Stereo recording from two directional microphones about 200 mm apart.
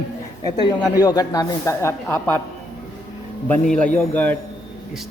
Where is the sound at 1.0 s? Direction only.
20° left (ahead or behind).